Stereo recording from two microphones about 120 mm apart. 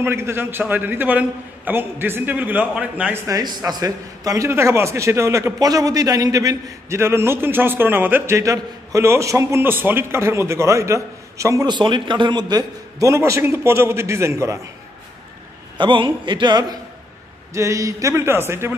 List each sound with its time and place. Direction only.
0.0 s a man's voice: 20° right (ahead or behind)
3.3 s a man's voice: 30° right (ahead or behind)
11.7 s a man's voice: 40° right (ahead or behind); by 14.6 s 25° right (ahead or behind)
15.8 s a man's voice: 45° right (ahead or behind); by 18.8 s 20° right (ahead or behind)